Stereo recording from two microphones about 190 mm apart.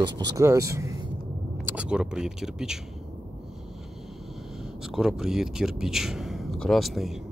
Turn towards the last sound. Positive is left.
turn(degrees=0)  # may be behind; listen again after turning